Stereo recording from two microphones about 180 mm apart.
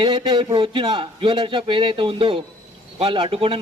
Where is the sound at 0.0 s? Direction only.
25° right (ahead or behind).